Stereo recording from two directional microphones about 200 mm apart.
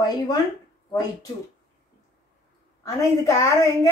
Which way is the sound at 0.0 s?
20° left (ahead or behind).